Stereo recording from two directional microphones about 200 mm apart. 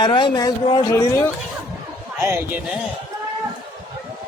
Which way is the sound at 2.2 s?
10° right (ahead or behind).